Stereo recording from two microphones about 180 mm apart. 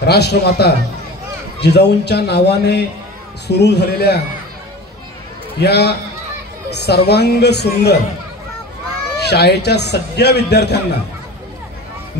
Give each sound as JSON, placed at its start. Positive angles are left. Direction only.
{"t": 0.0, "sound": "a man's voice", "side_deg": 65}
{"t": 5.6, "sound": "a man's voice", "side_deg": 65}
{"t": 9.3, "sound": "a man's voice", "side_deg": 65}